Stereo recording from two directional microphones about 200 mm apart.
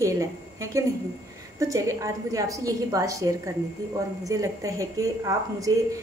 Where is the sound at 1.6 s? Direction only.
15° right (ahead or behind).